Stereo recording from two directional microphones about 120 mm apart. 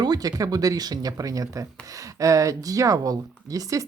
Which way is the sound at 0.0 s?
35° right (ahead or behind).